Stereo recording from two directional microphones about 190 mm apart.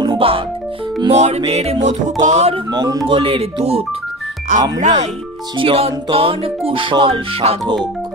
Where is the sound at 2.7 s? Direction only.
20° right (ahead or behind).